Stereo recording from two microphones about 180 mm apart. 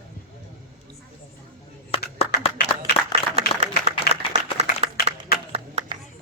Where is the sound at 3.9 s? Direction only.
35° right (ahead or behind).